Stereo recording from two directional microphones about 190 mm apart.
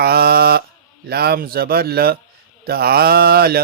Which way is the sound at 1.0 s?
55° right (ahead or behind).